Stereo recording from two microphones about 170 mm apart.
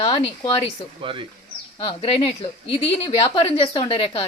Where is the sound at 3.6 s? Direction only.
30° left (ahead or behind).